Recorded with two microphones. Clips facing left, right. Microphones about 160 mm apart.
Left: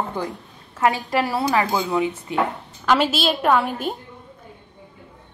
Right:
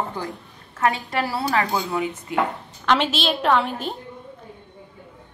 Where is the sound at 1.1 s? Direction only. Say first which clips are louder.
Left 3 dB; 20° left (ahead or behind).